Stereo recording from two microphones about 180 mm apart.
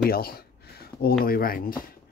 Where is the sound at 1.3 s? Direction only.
55° left (ahead or behind).